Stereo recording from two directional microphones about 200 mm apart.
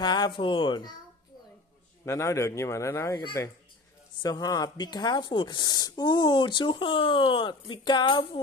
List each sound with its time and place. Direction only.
0.0 s speech: 20° left (ahead or behind)
2.0 s speech: 15° left (ahead or behind)